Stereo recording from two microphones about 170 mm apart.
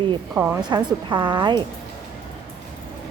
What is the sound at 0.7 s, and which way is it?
Speech, 25° right (ahead or behind).